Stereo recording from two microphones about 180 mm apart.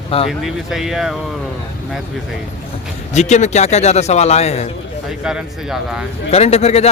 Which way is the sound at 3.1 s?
40° left (ahead or behind).